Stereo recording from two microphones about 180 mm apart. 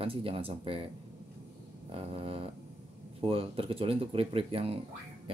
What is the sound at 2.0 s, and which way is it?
Speech, 30° right (ahead or behind).